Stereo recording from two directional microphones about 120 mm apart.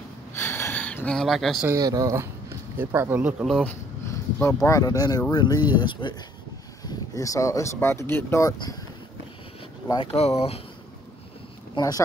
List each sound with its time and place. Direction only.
0.3 s gasp: 20° left (ahead or behind); by 1.7 s centre (ahead or behind)
1.7 s speech: 30° right (ahead or behind)
2.8 s speech: 20° right (ahead or behind)
4.1 s a sound: 20° left (ahead or behind)
4.6 s speech: 30° left (ahead or behind)
6.9 s speech: 30° left (ahead or behind)
9.9 s speech: 60° left (ahead or behind)
11.7 s speech: 30° left (ahead or behind)